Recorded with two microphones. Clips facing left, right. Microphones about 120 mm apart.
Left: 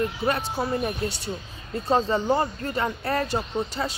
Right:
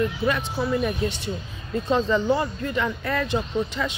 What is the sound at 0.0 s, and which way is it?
Speech, 35° left (ahead or behind).